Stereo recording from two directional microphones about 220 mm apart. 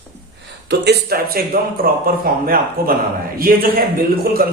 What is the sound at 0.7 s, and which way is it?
A man's voice, 45° right (ahead or behind).